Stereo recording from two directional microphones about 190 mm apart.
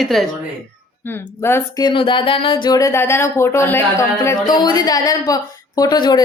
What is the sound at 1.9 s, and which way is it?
Speech, 25° left (ahead or behind).